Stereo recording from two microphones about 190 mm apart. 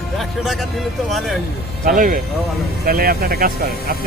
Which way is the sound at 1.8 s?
45° right (ahead or behind).